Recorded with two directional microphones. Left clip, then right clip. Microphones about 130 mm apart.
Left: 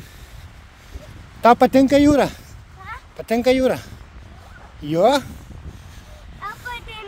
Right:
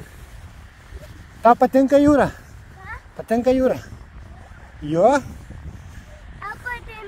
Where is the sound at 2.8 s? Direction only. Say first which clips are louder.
Left 1 dB; 40° left (ahead or behind).